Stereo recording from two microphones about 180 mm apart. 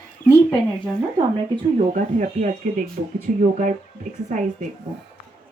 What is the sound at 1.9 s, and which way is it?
Speech, 45° right (ahead or behind).